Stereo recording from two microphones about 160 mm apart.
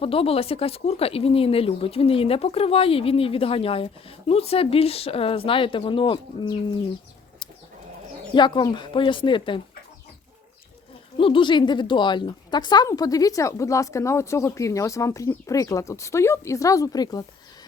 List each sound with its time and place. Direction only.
0.0 s speech: 35° left (ahead or behind)
8.3 s speech: 30° left (ahead or behind)
11.2 s a woman's voice: 30° left (ahead or behind)